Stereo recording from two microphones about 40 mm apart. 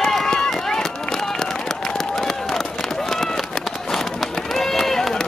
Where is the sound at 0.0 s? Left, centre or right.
Centre.